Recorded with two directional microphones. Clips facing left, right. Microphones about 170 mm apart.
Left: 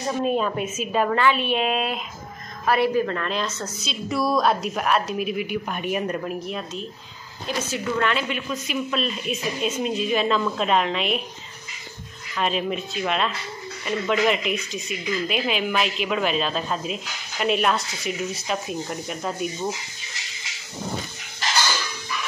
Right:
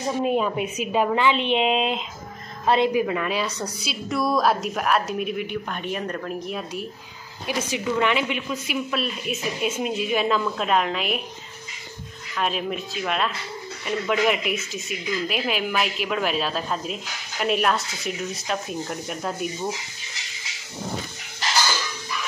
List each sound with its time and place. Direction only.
0.0 s a woman's voice: 10° right (ahead or behind)
2.9 s a woman's voice: 10° right (ahead or behind)
4.1 s speech: centre (ahead or behind)
6.5 s a woman's voice: 10° right (ahead or behind)
12.4 s speech: centre (ahead or behind)